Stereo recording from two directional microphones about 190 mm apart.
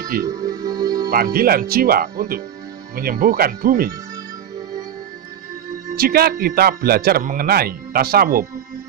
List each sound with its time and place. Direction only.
0.2 s music: 20° right (ahead or behind)
1.1 s speech: 50° right (ahead or behind)
5.9 s speech: 50° right (ahead or behind)